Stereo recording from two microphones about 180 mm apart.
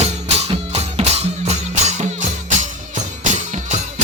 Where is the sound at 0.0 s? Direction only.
35° right (ahead or behind).